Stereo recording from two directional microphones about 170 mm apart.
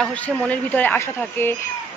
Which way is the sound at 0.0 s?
5° left (ahead or behind).